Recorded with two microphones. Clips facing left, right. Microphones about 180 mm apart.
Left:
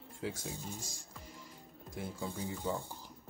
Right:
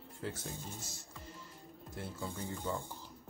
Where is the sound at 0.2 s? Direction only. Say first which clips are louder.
Left 2 dB; 10° left (ahead or behind).